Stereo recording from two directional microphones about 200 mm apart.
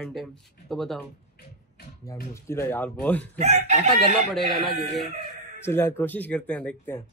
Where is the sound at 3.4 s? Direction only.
35° right (ahead or behind).